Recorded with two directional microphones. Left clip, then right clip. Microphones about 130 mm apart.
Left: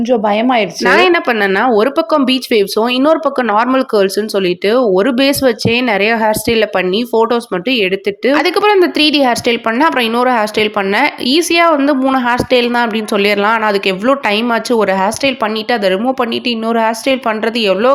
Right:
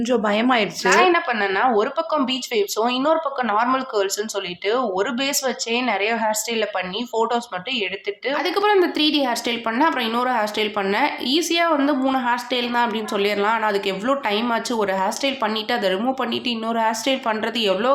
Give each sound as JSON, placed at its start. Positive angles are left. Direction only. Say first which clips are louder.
{"t": 0.1, "sound": "speech", "louder": "left 7 dB", "side_deg": 40}
{"t": 0.9, "sound": "speech", "louder": "left 6 dB", "side_deg": 55}
{"t": 8.3, "sound": "speech", "louder": "left 8 dB", "side_deg": 70}
{"t": 15.7, "sound": "speech", "louder": "left 10 dB", "side_deg": 50}